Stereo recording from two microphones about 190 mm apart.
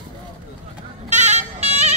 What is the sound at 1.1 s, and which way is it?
Music, 35° right (ahead or behind).